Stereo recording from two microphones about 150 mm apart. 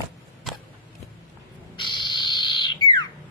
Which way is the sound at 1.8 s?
30° left (ahead or behind).